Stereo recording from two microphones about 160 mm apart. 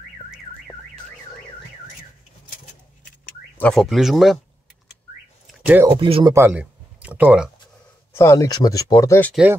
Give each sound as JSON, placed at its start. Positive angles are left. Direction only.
{"t": 3.5, "sound": "speech", "side_deg": 5}
{"t": 5.9, "sound": "speech", "side_deg": -35}
{"t": 6.3, "sound": "speech", "side_deg": -10}
{"t": 8.1, "sound": "speech", "side_deg": 15}
{"t": 9.3, "sound": "speech", "side_deg": -5}